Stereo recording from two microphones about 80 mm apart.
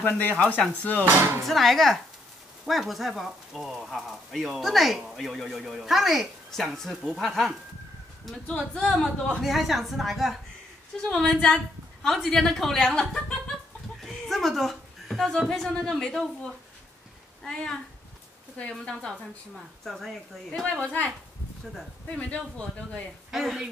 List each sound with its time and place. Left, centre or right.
0.0 s speech: left
1.0 s speech: right
1.4 s speech: centre
8.7 s a man's voice: centre
9.4 s a woman's voice: centre
17.4 s a man's voice: centre
20.6 s a man's voice: centre
22.1 s a man's voice: centre
23.3 s speech: centre